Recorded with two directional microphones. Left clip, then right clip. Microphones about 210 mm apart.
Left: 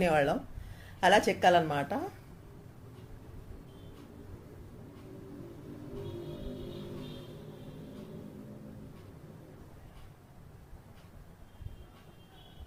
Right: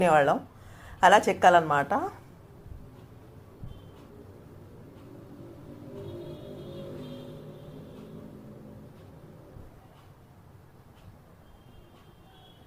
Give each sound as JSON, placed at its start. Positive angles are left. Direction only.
{"t": 0.0, "sound": "a woman's voice", "side_deg": 0}